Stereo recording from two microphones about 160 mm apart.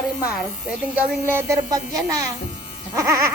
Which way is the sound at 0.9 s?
10° right (ahead or behind).